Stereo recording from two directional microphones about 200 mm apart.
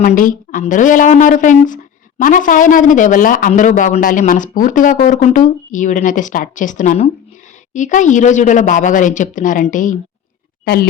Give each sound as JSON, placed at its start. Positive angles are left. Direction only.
{"t": 0.0, "sound": "speech", "side_deg": 40}